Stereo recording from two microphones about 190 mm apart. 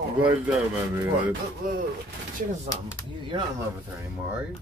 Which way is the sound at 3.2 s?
20° right (ahead or behind).